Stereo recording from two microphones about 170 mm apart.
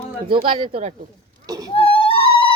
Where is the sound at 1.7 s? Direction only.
35° left (ahead or behind).